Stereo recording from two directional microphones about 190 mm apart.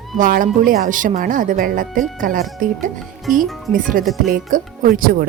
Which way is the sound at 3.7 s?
45° right (ahead or behind).